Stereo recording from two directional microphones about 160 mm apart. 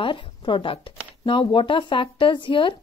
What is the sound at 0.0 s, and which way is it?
Speech, 30° left (ahead or behind).